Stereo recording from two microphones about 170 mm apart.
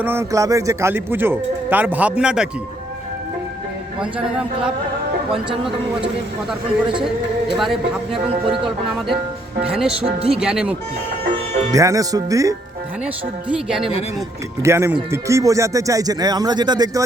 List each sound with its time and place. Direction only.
0.0 s speech: 15° right (ahead or behind)
4.0 s speech: 5° right (ahead or behind)
7.5 s speech: centre (ahead or behind)
10.2 s speech: 35° right (ahead or behind)
10.4 s speech: 5° right (ahead or behind)
11.7 s speech: 20° right (ahead or behind)
13.5 s speech: 5° right (ahead or behind)
14.6 s speech: 15° right (ahead or behind)